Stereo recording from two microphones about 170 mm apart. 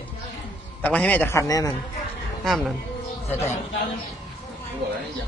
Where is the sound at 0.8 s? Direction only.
10° left (ahead or behind).